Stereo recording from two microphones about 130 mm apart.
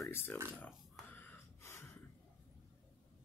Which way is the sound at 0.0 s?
15° left (ahead or behind).